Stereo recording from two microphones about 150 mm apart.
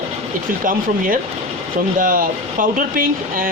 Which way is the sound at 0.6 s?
65° right (ahead or behind).